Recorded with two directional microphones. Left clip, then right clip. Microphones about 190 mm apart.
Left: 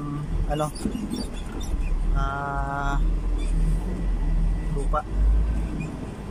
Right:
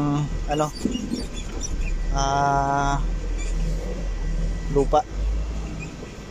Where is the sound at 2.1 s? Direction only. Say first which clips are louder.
Right 8 dB; 20° right (ahead or behind).